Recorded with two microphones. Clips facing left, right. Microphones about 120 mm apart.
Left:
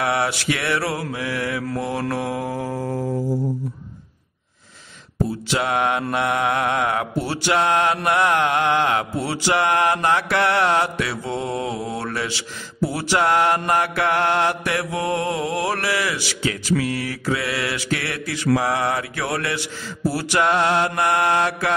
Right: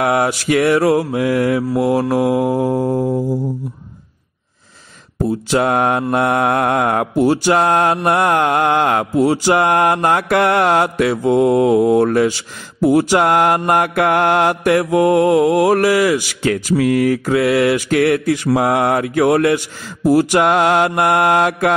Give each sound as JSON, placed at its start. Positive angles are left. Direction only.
{"t": 0.0, "sound": "mantra", "side_deg": -45}
{"t": 1.7, "sound": "mantra", "side_deg": -10}
{"t": 5.5, "sound": "mantra", "side_deg": -45}